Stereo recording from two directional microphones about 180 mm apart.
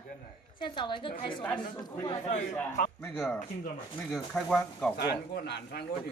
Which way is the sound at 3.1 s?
Centre (ahead or behind).